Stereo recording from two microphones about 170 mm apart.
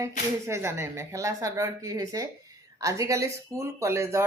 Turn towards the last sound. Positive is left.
turn(degrees=-15)  # may be behind; listen again after turning